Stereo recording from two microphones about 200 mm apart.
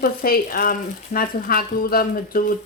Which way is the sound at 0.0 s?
45° left (ahead or behind).